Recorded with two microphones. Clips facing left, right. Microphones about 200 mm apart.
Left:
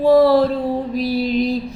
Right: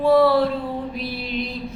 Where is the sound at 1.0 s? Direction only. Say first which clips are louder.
Left 9 dB; 40° left (ahead or behind).